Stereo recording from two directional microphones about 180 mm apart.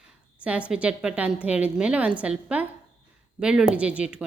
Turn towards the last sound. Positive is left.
turn(degrees=-5)  # may be behind; listen again after turning